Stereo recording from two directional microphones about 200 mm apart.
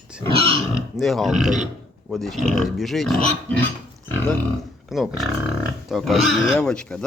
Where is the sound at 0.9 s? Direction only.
Centre (ahead or behind).